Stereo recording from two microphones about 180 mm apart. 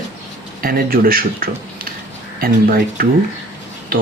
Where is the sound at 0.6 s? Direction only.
55° right (ahead or behind).